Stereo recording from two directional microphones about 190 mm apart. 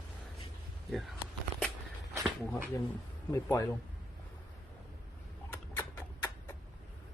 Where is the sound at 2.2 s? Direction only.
10° right (ahead or behind).